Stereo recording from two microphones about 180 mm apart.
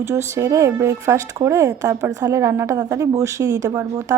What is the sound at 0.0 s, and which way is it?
A woman's voice, 15° right (ahead or behind).